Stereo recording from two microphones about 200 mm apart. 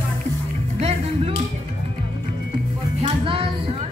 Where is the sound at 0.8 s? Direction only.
30° right (ahead or behind).